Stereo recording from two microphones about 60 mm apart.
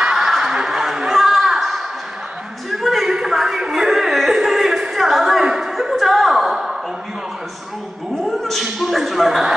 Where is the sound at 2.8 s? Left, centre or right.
Centre.